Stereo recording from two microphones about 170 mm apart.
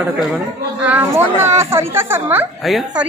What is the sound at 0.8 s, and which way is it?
A man's voice, 10° right (ahead or behind).